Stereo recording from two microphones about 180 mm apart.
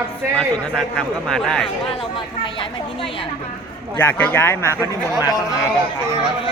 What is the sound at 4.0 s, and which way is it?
Speech, 10° left (ahead or behind).